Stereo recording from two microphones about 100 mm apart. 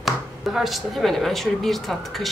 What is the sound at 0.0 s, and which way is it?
Speech, 5° right (ahead or behind).